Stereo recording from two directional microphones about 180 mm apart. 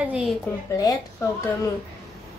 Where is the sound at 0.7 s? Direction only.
20° left (ahead or behind).